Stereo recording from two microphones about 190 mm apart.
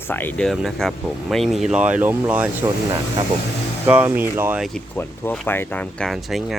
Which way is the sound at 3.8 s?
10° right (ahead or behind).